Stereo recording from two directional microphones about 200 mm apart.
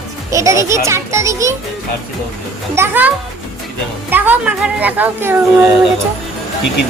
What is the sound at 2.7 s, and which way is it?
Speech, 10° right (ahead or behind).